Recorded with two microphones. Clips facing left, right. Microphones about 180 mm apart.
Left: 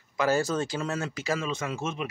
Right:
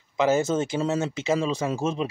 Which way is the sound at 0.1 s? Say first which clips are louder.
Right 4 dB; 20° right (ahead or behind).